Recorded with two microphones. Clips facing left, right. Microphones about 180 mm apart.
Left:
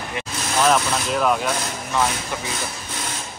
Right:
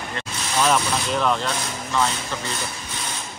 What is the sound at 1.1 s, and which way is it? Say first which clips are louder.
Speech: left 2 dB; 5° left (ahead or behind).